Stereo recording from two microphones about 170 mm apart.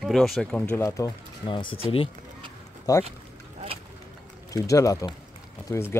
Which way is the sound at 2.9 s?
20° left (ahead or behind).